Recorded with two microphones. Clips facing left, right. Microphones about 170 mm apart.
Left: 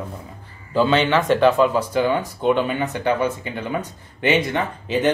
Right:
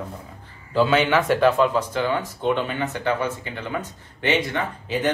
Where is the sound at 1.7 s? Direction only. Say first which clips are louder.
Left 3 dB; 10° left (ahead or behind).